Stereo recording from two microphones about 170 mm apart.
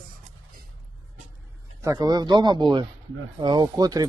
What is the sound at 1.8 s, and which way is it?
Speech, 20° right (ahead or behind).